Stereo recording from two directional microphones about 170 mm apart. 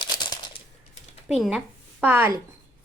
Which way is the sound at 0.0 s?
25° left (ahead or behind).